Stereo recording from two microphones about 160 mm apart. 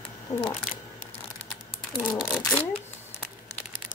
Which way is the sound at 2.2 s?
5° left (ahead or behind).